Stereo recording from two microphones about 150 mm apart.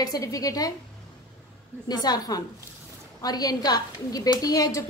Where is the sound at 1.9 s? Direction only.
25° left (ahead or behind).